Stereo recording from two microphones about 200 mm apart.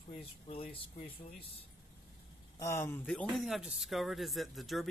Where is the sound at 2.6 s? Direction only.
15° left (ahead or behind).